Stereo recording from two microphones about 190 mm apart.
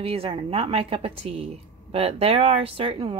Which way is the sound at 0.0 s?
30° right (ahead or behind).